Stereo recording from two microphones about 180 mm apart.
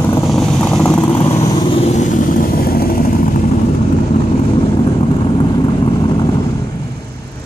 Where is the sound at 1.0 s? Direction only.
30° left (ahead or behind); by 3.1 s 55° left (ahead or behind).